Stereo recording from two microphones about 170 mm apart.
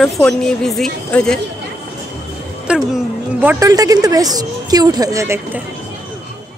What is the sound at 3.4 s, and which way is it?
A woman's voice, 15° right (ahead or behind).